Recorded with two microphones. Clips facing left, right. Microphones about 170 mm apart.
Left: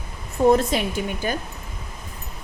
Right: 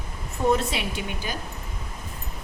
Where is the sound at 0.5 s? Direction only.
40° left (ahead or behind).